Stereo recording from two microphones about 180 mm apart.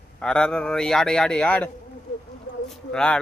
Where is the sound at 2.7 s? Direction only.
5° left (ahead or behind).